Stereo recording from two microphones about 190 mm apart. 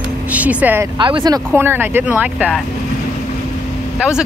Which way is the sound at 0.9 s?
25° right (ahead or behind).